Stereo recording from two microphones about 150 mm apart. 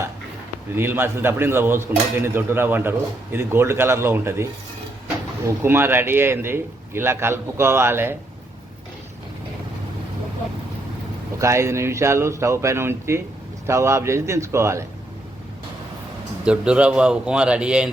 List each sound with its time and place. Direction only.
0.8 s speech: 15° right (ahead or behind)
5.5 s speech: 15° right (ahead or behind)
11.3 s a man's voice: 20° right (ahead or behind)
16.4 s speech: 5° right (ahead or behind)